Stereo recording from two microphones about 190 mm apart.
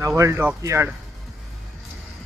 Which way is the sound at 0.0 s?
15° right (ahead or behind).